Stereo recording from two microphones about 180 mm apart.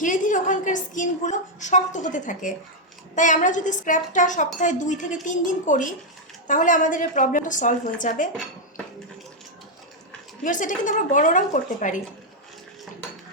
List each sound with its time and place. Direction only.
0.0 s a woman's voice: 45° left (ahead or behind)
10.4 s a woman's voice: 45° left (ahead or behind)